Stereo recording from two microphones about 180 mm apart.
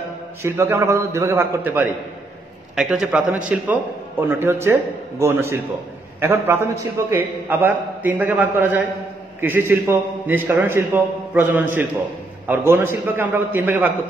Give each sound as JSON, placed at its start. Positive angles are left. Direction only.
{"t": 0.4, "sound": "a man's voice", "side_deg": -15}